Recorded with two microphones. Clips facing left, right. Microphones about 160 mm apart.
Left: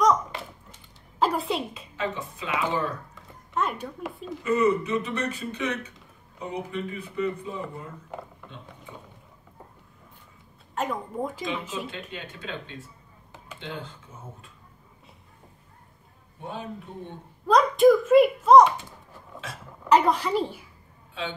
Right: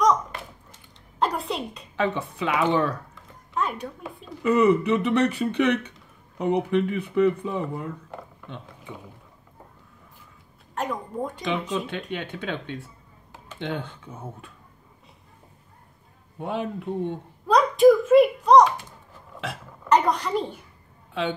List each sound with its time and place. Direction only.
1.2 s a woman's voice: centre (ahead or behind)
2.0 s speech: 65° right (ahead or behind)
3.5 s speech: centre (ahead or behind)
4.4 s speech: 65° right (ahead or behind)
10.7 s speech: centre (ahead or behind)
11.7 s speech: 65° right (ahead or behind)
16.3 s speech: 65° right (ahead or behind)
17.5 s a child's voice: centre (ahead or behind)
19.8 s a woman's voice: 5° left (ahead or behind)
21.1 s a woman's voice: 65° right (ahead or behind)